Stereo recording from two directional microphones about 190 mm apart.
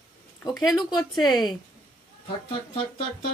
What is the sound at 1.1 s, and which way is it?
Speech, 20° left (ahead or behind).